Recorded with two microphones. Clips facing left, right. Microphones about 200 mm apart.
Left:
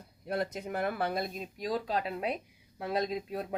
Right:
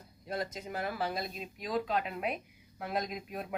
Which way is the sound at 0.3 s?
60° left (ahead or behind).